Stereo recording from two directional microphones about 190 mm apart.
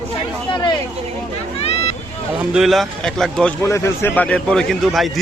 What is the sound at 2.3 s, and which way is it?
A man's voice, 5° right (ahead or behind).